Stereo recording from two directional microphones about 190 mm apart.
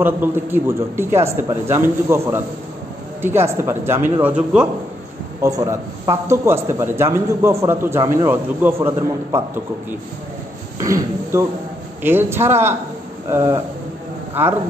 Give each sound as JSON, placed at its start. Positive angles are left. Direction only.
{"t": 0.0, "sound": "a man's voice", "side_deg": -10}
{"t": 5.4, "sound": "a man's voice", "side_deg": -20}
{"t": 10.8, "sound": "a man's voice", "side_deg": -15}